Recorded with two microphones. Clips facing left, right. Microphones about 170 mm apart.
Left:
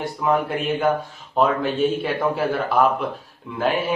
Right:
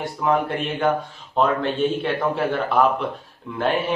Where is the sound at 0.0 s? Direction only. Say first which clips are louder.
Even; centre (ahead or behind).